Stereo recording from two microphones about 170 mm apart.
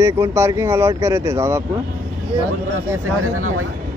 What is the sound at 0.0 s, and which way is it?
Speech, 15° right (ahead or behind).